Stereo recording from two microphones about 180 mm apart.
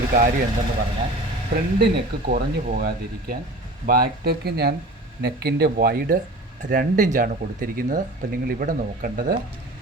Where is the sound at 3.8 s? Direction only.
55° right (ahead or behind).